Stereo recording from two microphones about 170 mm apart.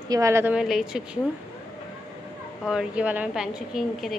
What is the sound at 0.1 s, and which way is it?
Speech, 15° right (ahead or behind).